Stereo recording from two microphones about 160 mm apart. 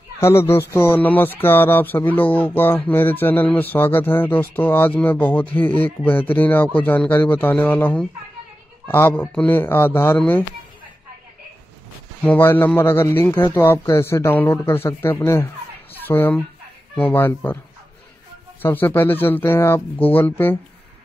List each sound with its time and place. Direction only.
0.2 s speech: 15° left (ahead or behind)
12.3 s speech: 15° left (ahead or behind)
18.6 s speech: 10° left (ahead or behind)